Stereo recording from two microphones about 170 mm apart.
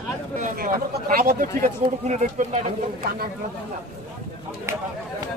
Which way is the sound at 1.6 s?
45° right (ahead or behind).